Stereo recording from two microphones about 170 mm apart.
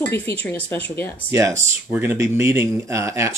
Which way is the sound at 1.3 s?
20° right (ahead or behind).